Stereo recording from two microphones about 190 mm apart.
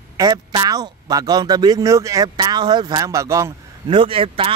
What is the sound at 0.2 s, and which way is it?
A man's voice, 25° right (ahead or behind).